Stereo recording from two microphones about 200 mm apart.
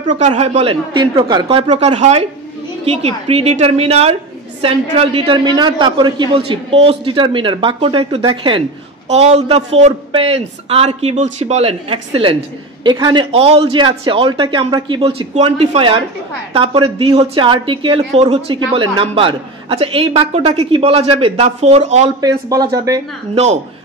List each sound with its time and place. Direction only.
0.0 s a woman's voice: 35° right (ahead or behind)
22.2 s speech: 20° right (ahead or behind)